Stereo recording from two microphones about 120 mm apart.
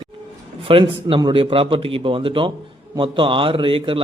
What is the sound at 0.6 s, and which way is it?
A man's voice, 50° right (ahead or behind).